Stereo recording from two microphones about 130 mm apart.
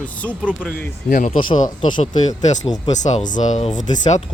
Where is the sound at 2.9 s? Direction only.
70° left (ahead or behind).